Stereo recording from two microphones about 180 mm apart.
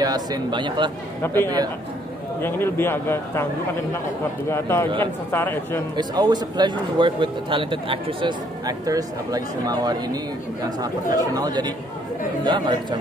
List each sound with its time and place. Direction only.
0.0 s speech: 20° right (ahead or behind)
1.2 s a man's voice: 10° left (ahead or behind)
4.5 s a man's voice: 15° left (ahead or behind)
5.9 s speech: 25° right (ahead or behind)